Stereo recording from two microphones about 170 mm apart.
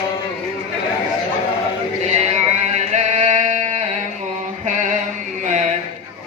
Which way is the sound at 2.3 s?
45° right (ahead or behind).